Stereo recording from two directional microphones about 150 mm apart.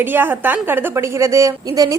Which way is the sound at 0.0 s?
15° right (ahead or behind).